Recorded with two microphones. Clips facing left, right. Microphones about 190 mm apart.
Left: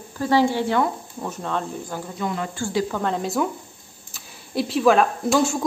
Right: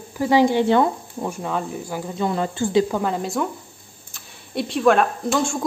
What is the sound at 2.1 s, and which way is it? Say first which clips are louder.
Speech: right 5 dB; 30° right (ahead or behind).